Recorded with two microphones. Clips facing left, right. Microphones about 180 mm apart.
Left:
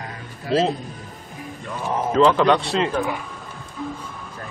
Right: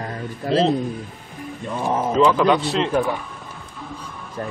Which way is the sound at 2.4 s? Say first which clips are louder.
Even; 5° right (ahead or behind).